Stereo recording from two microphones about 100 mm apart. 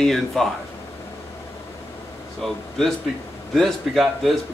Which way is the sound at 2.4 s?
Centre (ahead or behind).